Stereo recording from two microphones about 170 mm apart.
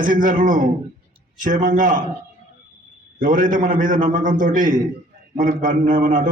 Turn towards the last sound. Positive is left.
turn(degrees=-50)  # may be behind; listen again after turning